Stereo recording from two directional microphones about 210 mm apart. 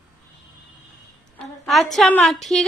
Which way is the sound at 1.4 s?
Centre (ahead or behind).